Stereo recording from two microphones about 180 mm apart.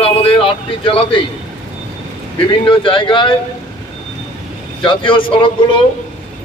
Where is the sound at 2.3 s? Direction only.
30° left (ahead or behind).